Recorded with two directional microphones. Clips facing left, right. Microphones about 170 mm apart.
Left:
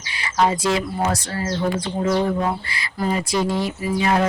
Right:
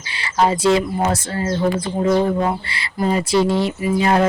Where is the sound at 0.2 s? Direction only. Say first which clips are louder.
Right 2 dB; 30° right (ahead or behind).